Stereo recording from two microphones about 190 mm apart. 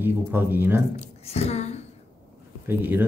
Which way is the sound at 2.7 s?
10° right (ahead or behind).